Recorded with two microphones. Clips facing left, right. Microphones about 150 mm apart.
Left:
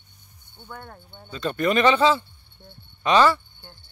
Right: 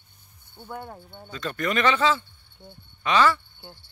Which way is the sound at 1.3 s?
25° left (ahead or behind).